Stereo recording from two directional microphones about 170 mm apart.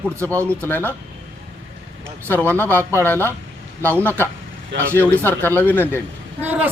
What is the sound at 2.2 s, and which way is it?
Speech, 10° left (ahead or behind).